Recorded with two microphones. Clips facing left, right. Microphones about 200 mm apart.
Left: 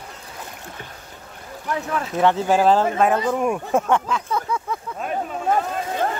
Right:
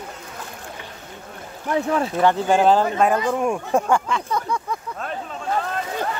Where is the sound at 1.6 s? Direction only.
30° right (ahead or behind).